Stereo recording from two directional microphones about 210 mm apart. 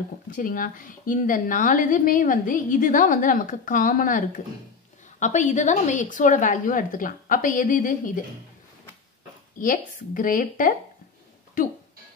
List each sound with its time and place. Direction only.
0.4 s a woman's voice: 40° left (ahead or behind)
9.6 s a woman's voice: 40° left (ahead or behind)